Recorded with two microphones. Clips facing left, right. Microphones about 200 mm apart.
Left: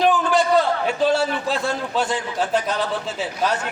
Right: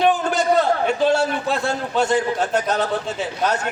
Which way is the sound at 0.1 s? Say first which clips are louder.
Left 1 dB; 45° right (ahead or behind).